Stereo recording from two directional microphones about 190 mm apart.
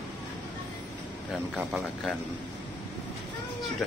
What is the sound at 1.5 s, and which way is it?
Speech, centre (ahead or behind).